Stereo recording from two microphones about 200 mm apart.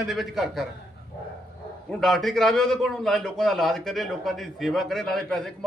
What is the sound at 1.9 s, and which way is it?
A man's voice, centre (ahead or behind).